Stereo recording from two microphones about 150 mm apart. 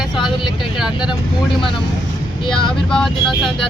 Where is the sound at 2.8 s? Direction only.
5° left (ahead or behind).